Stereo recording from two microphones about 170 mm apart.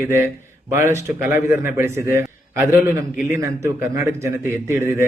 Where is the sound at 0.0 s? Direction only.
15° right (ahead or behind).